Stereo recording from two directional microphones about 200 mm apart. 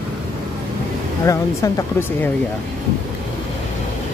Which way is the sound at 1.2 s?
15° left (ahead or behind).